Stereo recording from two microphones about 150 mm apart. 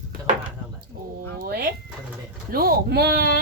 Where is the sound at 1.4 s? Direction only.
90° right.